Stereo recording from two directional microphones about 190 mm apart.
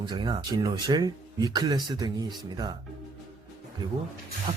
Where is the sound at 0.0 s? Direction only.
25° right (ahead or behind).